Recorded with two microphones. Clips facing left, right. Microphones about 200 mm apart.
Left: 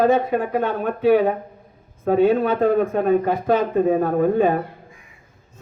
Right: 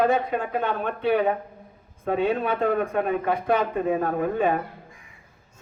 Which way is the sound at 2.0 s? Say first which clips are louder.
Left 7 dB; 35° left (ahead or behind).